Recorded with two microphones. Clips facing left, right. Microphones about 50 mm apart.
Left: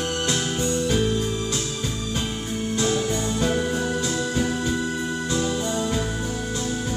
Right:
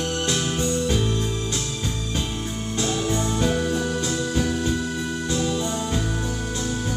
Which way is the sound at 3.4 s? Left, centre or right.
Centre.